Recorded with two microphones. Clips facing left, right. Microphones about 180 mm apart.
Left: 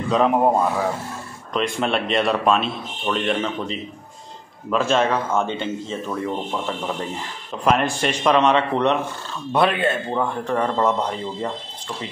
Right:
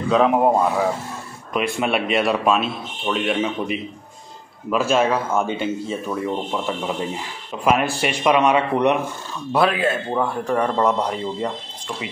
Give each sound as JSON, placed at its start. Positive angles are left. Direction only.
{"t": 0.1, "sound": "speech", "side_deg": 0}
{"t": 9.5, "sound": "speech", "side_deg": 0}